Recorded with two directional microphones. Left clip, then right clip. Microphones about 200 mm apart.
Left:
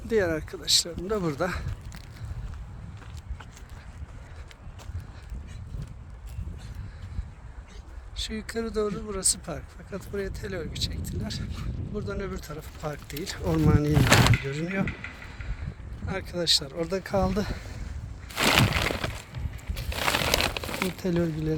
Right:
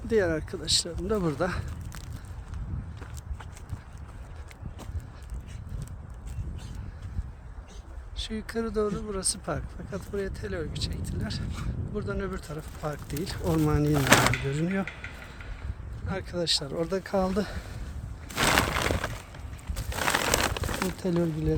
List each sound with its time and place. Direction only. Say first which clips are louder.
0.1 s speech: even; centre (ahead or behind)
8.1 s speech: left 1 dB; 5° left (ahead or behind)
13.9 s speech: right 1 dB; 20° right (ahead or behind)
14.4 s speech: even; 5° right (ahead or behind)
16.0 s speech: left 3 dB; centre (ahead or behind)
18.3 s a sound: left 1 dB; 10° right (ahead or behind)
19.9 s crumpling: left 1 dB; 15° right (ahead or behind)
21.0 s speech: right 1 dB; centre (ahead or behind)